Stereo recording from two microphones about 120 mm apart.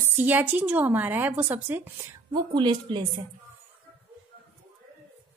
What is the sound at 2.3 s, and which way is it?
Speech, 40° right (ahead or behind).